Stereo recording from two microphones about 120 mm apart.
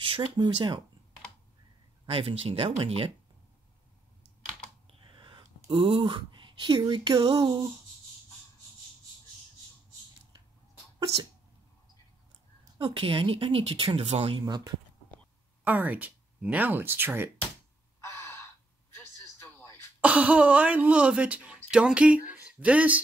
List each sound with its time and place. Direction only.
0.0 s a woman's voice: 45° right (ahead or behind)
2.0 s a woman's voice: 50° right (ahead or behind)
4.8 s computer keyboard: 45° right (ahead or behind)
5.6 s speech: 50° right (ahead or behind)
6.8 s a sound: 35° right (ahead or behind)
12.7 s a woman's voice: 45° right (ahead or behind)
14.0 s speech: 60° right (ahead or behind)
14.4 s a sound: 30° right (ahead or behind)
15.6 s speech: 15° right (ahead or behind)
18.0 s gasp: 20° left (ahead or behind)
18.9 s a sound: 20° left (ahead or behind)
20.0 s speech: 10° right (ahead or behind)